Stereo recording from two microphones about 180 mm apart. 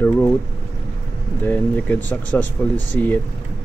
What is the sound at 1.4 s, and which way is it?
Speech, 10° left (ahead or behind).